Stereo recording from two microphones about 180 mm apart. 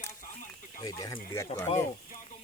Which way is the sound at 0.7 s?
20° left (ahead or behind).